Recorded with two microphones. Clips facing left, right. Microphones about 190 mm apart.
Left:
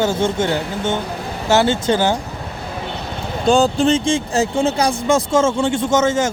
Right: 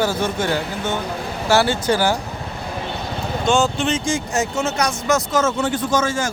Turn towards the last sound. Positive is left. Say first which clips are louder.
# left 4 dB
turn(degrees=25)  # may be behind; listen again after turning